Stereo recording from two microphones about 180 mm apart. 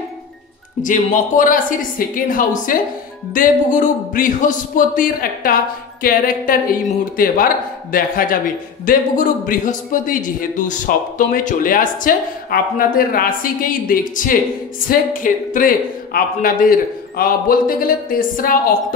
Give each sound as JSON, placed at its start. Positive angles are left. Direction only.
{"t": 0.8, "sound": "a man's voice", "side_deg": 45}